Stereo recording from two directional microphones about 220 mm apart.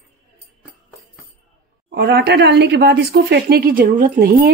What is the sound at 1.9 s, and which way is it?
Speech, 50° right (ahead or behind).